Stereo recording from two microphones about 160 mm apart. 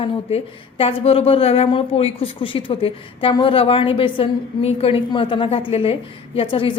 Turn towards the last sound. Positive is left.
turn(degrees=35)  # may be behind; listen again after turning